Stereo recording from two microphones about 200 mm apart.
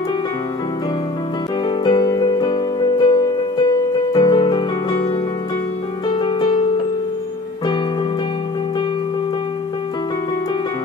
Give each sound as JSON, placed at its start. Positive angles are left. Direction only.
{"t": 1.8, "sound": "music", "side_deg": 20}
{"t": 6.0, "sound": "music", "side_deg": 20}